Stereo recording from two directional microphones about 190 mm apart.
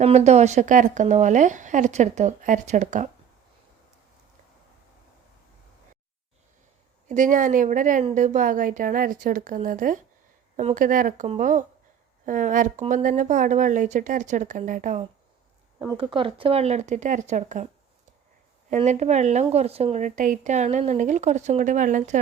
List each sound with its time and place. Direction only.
0.0 s speech: 35° right (ahead or behind)
7.1 s a woman's voice: 45° right (ahead or behind)
16.0 s speech: 25° right (ahead or behind)
18.7 s speech: 35° right (ahead or behind)